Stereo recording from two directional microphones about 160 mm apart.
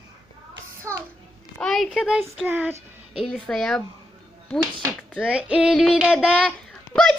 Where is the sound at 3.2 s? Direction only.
Centre (ahead or behind).